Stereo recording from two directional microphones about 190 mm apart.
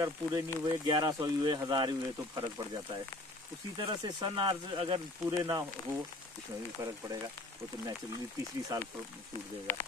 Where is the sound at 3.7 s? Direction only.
25° right (ahead or behind).